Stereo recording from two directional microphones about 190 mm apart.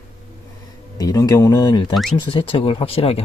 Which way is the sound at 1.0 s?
20° left (ahead or behind).